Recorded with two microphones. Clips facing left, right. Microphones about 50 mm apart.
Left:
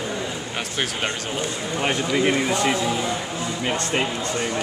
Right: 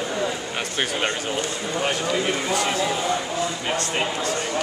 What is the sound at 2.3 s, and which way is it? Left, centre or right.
Speech, centre.